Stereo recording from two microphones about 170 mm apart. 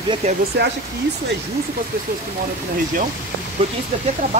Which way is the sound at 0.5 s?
80° right.